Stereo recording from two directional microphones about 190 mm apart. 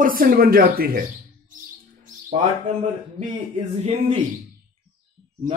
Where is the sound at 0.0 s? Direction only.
50° right (ahead or behind).